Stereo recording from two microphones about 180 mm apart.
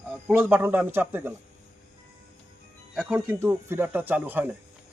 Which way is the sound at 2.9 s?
10° right (ahead or behind).